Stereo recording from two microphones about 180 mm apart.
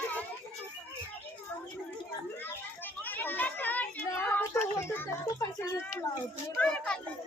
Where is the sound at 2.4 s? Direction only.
10° left (ahead or behind).